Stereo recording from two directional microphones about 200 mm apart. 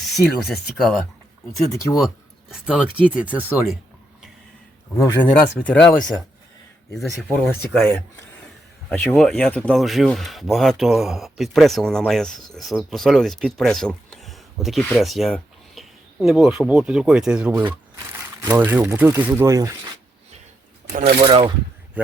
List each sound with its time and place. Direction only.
0.0 s speech: centre (ahead or behind)
2.5 s speech: 5° right (ahead or behind)
4.9 s speech: 10° left (ahead or behind); by 19.7 s 15° right (ahead or behind)
20.9 s speech: 50° right (ahead or behind)
21.2 s coin: 25° right (ahead or behind)
22.0 s speech: 5° right (ahead or behind)